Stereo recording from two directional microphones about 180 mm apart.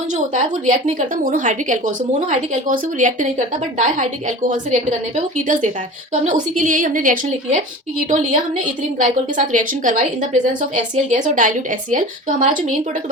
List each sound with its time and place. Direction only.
0.1 s a woman's voice: 45° right (ahead or behind)